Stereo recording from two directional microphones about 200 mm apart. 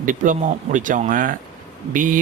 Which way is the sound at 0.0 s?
40° right (ahead or behind).